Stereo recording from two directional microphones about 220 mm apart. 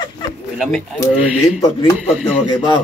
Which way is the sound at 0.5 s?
Centre (ahead or behind).